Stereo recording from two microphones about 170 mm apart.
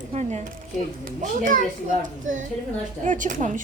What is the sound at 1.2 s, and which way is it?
Speech, 50° right (ahead or behind).